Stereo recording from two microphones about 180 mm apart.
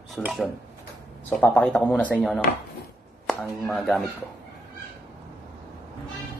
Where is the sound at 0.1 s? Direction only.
Centre (ahead or behind).